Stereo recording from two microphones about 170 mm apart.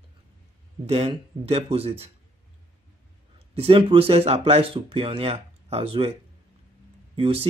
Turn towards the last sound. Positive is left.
turn(degrees=-35)  # may be behind; listen again after turning